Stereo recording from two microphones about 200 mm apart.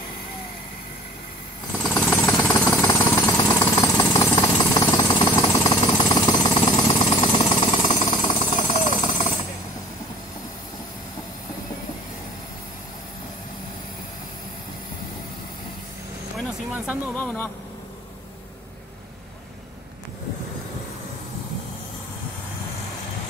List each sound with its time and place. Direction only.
1.8 s jackhammer: 10° left (ahead or behind); by 9.3 s 30° left (ahead or behind)
17.1 s vehicle: 10° left (ahead or behind)